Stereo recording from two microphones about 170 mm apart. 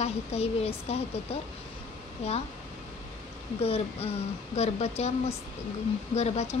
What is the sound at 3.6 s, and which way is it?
Speech, 35° left (ahead or behind).